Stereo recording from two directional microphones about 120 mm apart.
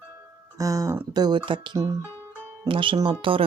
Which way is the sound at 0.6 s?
30° right (ahead or behind).